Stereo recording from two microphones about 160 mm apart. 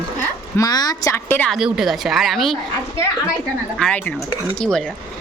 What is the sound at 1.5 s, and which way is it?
A woman's voice, 5° right (ahead or behind).